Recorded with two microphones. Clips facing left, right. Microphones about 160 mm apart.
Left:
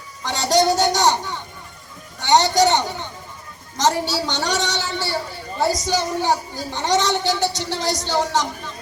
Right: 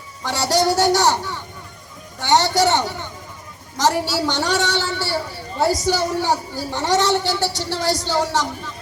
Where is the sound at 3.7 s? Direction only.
20° left (ahead or behind).